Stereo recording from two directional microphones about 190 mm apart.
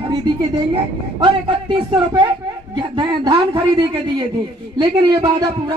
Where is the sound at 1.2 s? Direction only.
25° right (ahead or behind).